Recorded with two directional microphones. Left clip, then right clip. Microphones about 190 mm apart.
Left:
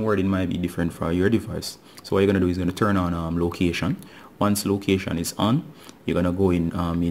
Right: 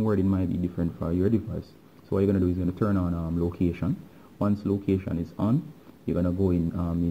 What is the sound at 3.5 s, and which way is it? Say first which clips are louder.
Speech: left 5 dB; 10° left (ahead or behind).